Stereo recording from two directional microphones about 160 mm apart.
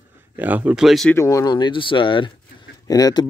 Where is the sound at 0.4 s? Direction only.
10° right (ahead or behind).